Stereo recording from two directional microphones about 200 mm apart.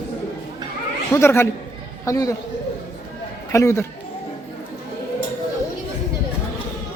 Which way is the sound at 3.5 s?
15° left (ahead or behind).